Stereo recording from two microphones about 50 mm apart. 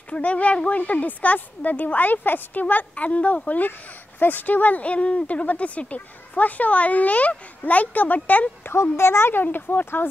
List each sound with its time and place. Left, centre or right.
0.1 s speech: left
8.9 s speech: left